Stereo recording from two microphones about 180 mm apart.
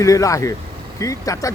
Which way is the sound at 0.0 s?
20° left (ahead or behind).